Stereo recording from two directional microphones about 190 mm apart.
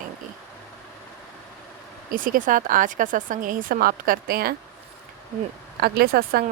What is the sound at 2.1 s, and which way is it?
Speech, 45° right (ahead or behind).